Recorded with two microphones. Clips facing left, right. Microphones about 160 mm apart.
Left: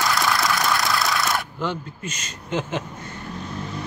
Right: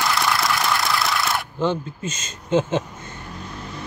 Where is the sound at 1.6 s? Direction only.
20° right (ahead or behind).